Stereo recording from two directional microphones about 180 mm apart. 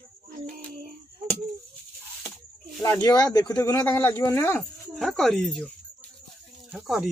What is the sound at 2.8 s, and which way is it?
Speech, 20° left (ahead or behind).